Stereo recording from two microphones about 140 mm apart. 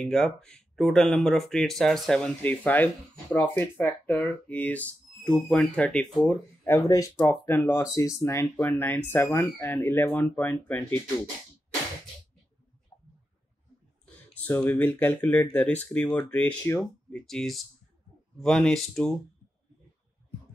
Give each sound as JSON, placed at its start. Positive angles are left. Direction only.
{"t": 0.0, "sound": "speech", "side_deg": 5}
{"t": 12.9, "sound": "a sound", "side_deg": 15}
{"t": 14.0, "sound": "speech", "side_deg": 10}
{"t": 17.1, "sound": "speech", "side_deg": 5}